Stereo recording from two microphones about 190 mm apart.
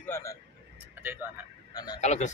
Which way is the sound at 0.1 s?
15° left (ahead or behind).